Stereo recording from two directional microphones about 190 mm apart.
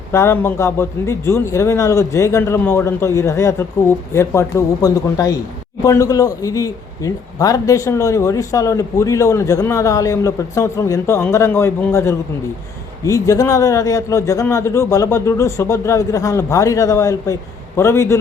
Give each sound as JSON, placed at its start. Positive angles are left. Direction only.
{"t": 0.1, "sound": "a man's voice", "side_deg": 15}